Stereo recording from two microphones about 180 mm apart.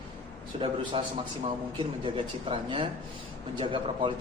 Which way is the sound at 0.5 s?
30° right (ahead or behind).